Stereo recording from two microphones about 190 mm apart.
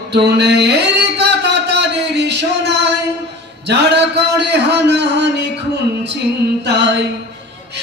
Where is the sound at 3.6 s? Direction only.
65° right (ahead or behind).